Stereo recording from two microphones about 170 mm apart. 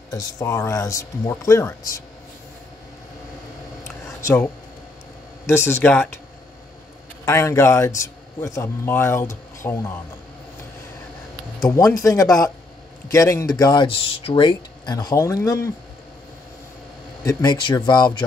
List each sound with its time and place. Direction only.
0.1 s speech: 20° left (ahead or behind)
4.2 s speech: 15° left (ahead or behind)
5.5 s a man's voice: 15° left (ahead or behind)
7.2 s a man's voice: 15° left (ahead or behind)
11.6 s speech: 20° left (ahead or behind)
17.2 s speech: 20° left (ahead or behind)